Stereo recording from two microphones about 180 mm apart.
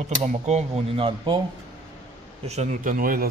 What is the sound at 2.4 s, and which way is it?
Speech, 40° right (ahead or behind).